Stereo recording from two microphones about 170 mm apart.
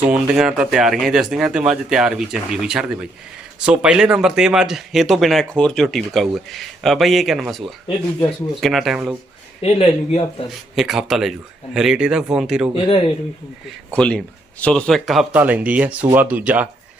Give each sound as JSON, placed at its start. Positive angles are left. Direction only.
{"t": 0.1, "sound": "speech", "side_deg": -5}
{"t": 9.6, "sound": "speech", "side_deg": 35}
{"t": 10.8, "sound": "speech", "side_deg": 0}
{"t": 12.7, "sound": "speech", "side_deg": 35}
{"t": 13.9, "sound": "speech", "side_deg": 5}